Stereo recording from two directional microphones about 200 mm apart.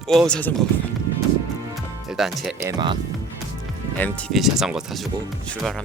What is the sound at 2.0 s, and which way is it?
Speech, centre (ahead or behind).